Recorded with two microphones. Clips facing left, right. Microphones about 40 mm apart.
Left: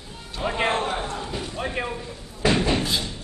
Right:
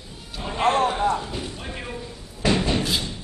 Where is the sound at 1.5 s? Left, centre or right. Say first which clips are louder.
Left 6 dB; left.